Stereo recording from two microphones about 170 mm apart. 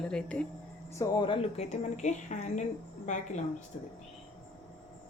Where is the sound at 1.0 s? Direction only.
30° left (ahead or behind); by 2.6 s 45° left (ahead or behind).